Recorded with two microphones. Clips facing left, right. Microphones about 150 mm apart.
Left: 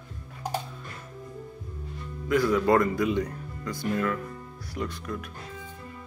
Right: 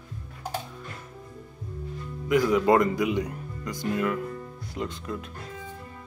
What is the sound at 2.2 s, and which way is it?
Speech, 15° right (ahead or behind).